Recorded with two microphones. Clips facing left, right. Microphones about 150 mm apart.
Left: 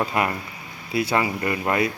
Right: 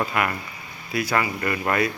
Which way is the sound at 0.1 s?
30° left (ahead or behind).